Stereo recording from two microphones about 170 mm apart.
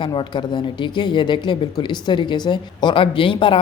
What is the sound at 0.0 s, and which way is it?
Speech, 30° left (ahead or behind).